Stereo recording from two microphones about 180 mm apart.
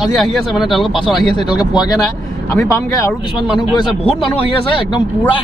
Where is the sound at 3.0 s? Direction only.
25° left (ahead or behind).